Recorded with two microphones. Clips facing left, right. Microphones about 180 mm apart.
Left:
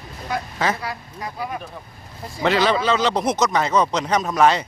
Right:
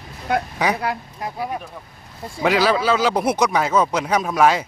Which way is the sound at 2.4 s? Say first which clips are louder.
Right 1 dB; 5° right (ahead or behind).